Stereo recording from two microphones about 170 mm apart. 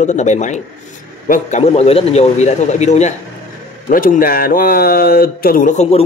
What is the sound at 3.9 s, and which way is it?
Speech, 55° left (ahead or behind).